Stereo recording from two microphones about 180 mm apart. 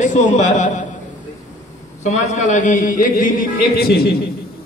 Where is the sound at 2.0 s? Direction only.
40° left (ahead or behind); by 4.2 s 60° left (ahead or behind).